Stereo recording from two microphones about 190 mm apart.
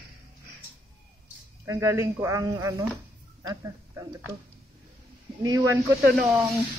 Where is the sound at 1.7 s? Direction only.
15° right (ahead or behind).